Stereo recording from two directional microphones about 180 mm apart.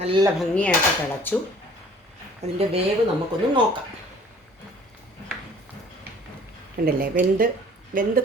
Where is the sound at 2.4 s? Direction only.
35° right (ahead or behind).